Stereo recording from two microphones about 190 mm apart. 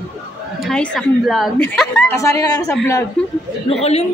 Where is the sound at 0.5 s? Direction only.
5° left (ahead or behind).